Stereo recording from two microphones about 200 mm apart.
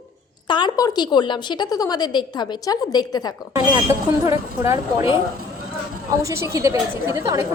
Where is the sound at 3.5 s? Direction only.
15° right (ahead or behind).